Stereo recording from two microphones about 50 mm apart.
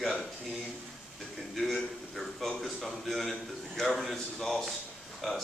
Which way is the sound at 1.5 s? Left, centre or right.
Centre.